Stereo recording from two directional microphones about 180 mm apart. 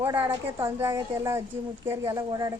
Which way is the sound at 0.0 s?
25° right (ahead or behind).